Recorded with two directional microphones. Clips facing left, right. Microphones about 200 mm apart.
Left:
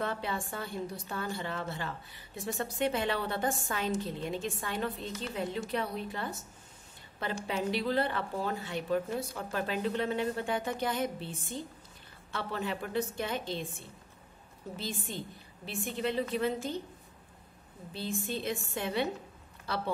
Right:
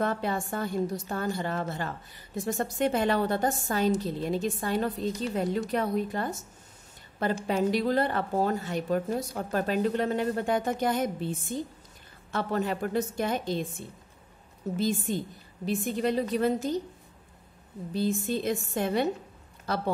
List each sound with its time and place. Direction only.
0.0 s a woman's voice: 45° right (ahead or behind)
7.4 s a woman's voice: 45° right (ahead or behind)
14.8 s a woman's voice: 45° right (ahead or behind)
17.9 s a woman's voice: 40° right (ahead or behind)